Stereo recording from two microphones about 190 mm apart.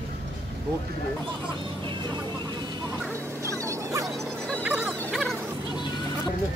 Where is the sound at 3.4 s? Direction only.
15° right (ahead or behind).